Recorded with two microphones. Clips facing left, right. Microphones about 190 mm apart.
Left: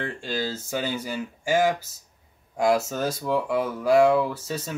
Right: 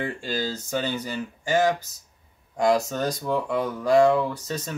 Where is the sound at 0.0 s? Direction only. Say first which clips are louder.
Right 1 dB; 5° right (ahead or behind).